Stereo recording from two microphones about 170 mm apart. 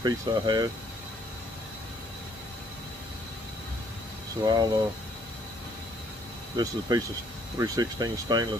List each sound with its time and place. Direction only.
0.0 s speech: 25° right (ahead or behind)
4.4 s speech: 25° right (ahead or behind)
6.5 s speech: 20° right (ahead or behind)